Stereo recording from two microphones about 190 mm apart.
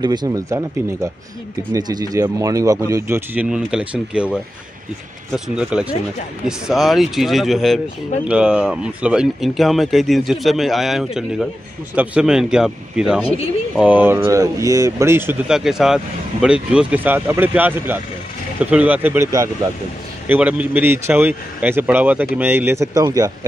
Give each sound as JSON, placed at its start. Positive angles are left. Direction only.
{"t": 0.0, "sound": "speech", "side_deg": -20}
{"t": 5.3, "sound": "speech", "side_deg": -5}